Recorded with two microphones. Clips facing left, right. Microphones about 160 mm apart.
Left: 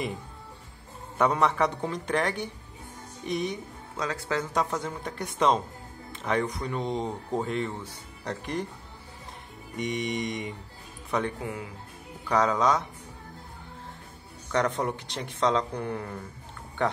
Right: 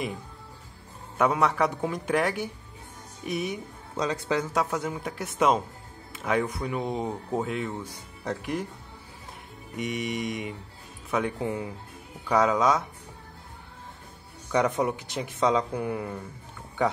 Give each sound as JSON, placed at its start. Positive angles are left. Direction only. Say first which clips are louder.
{"t": 1.1, "sound": "speech", "louder": "even", "side_deg": 0}
{"t": 3.9, "sound": "speech", "louder": "right 3 dB", "side_deg": -20}
{"t": 4.5, "sound": "speech", "louder": "right 1 dB", "side_deg": -5}
{"t": 9.8, "sound": "speech", "louder": "even", "side_deg": 0}
{"t": 11.4, "sound": "speech", "louder": "right 5 dB", "side_deg": -25}
{"t": 12.3, "sound": "speech", "louder": "right 1 dB", "side_deg": -5}
{"t": 14.5, "sound": "speech", "louder": "right 2 dB", "side_deg": -10}